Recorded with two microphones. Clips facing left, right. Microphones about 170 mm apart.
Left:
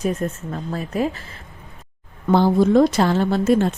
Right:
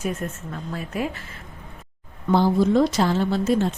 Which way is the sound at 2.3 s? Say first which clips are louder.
Left 3 dB; 60° left (ahead or behind).